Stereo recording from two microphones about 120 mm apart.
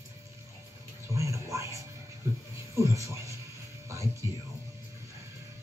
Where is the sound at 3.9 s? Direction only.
25° right (ahead or behind).